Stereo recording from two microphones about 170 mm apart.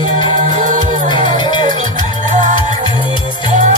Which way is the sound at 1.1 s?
25° left (ahead or behind).